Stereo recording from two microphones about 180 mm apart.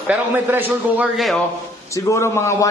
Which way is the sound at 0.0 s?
10° right (ahead or behind).